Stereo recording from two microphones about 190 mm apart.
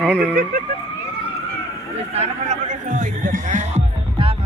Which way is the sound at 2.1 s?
35° right (ahead or behind).